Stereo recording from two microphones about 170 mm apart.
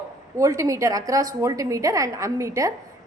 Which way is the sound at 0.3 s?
20° right (ahead or behind).